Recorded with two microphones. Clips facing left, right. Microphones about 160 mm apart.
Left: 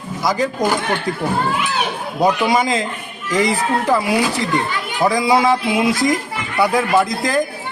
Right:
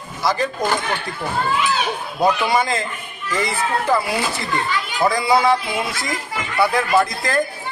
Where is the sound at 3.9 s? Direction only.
15° left (ahead or behind).